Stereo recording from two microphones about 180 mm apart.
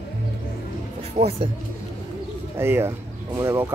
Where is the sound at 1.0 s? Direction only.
35° right (ahead or behind).